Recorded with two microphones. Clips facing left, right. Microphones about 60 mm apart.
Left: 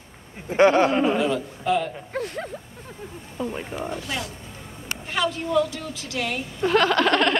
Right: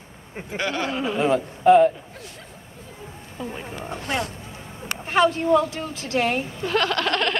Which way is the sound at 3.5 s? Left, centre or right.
Centre.